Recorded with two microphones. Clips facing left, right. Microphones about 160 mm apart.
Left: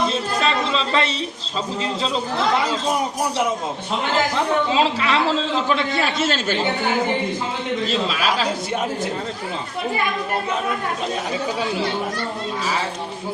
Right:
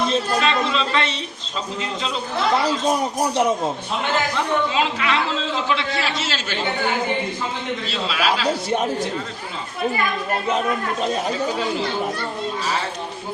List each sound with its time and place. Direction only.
0.4 s a sound: 35° left (ahead or behind)
4.7 s a man's voice: 30° left (ahead or behind)
5.6 s a man's voice: 45° left (ahead or behind)
7.9 s a man's voice: 45° left (ahead or behind)